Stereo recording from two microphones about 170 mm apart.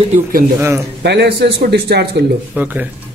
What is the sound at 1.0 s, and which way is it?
Speech, 85° right.